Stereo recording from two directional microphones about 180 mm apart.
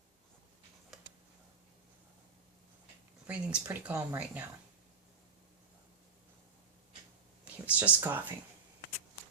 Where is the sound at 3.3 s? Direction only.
5° right (ahead or behind).